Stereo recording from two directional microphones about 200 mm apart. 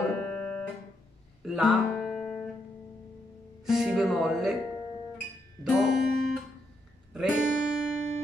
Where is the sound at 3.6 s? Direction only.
Centre (ahead or behind).